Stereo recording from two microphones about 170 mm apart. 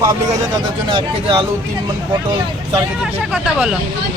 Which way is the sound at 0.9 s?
30° right (ahead or behind).